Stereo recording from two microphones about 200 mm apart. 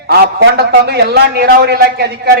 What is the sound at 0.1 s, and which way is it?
A man's voice, 55° right (ahead or behind).